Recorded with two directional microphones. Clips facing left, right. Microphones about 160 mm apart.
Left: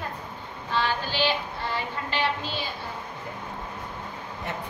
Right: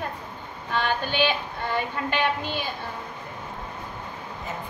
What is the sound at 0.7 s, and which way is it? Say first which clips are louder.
Speech: right 1 dB; 55° right (ahead or behind).